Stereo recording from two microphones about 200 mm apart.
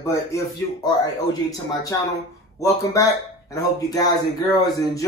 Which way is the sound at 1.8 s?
15° left (ahead or behind).